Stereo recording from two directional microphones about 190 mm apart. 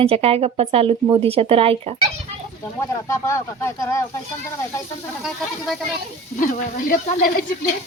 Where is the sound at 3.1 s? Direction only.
15° left (ahead or behind).